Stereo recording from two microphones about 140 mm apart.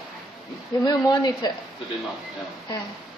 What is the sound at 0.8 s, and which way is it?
Speech, 30° left (ahead or behind).